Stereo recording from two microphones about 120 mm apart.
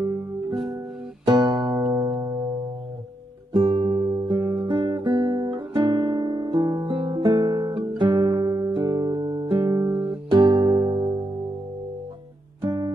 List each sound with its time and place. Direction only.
1.2 s music: 40° right (ahead or behind)
3.5 s guitar: 40° right (ahead or behind)
10.3 s music: 40° right (ahead or behind)
12.6 s music: 35° right (ahead or behind)